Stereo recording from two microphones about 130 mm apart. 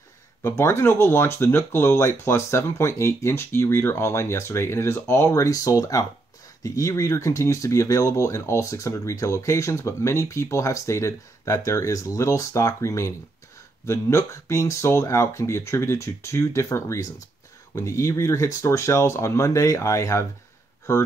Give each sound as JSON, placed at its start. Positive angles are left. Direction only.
{"t": 0.4, "sound": "speech", "side_deg": 20}